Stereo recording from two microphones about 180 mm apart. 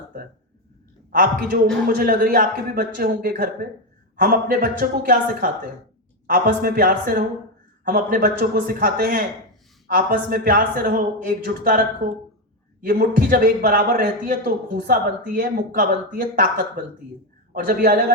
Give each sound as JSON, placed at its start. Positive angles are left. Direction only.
{"t": 1.1, "sound": "a man's voice", "side_deg": -50}
{"t": 12.8, "sound": "a man's voice", "side_deg": -55}